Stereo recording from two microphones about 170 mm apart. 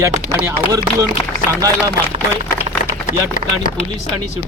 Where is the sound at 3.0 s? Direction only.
50° left (ahead or behind).